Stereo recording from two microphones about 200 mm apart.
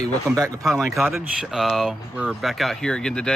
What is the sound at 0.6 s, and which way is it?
Speech, centre (ahead or behind).